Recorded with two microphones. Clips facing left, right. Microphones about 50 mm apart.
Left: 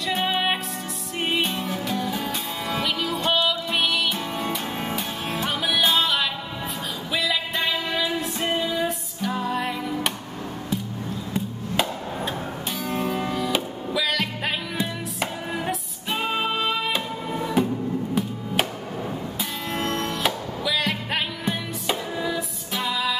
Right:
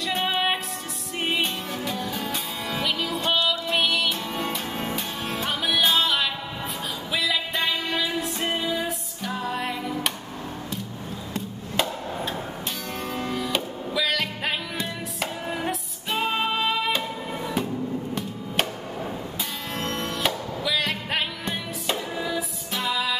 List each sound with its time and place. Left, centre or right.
0.0 s music: centre
11.3 s music: centre
12.9 s music: centre
19.7 s music: centre